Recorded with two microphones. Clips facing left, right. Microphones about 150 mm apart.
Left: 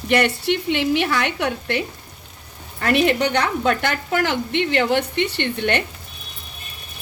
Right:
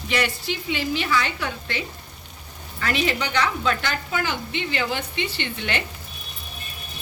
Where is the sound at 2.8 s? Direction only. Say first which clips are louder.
Left 7 dB; 60° left (ahead or behind).